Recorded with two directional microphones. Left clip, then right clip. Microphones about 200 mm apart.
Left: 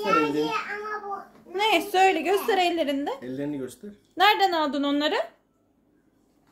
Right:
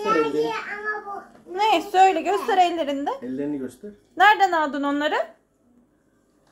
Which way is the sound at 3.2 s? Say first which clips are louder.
Right 3 dB; 50° left (ahead or behind).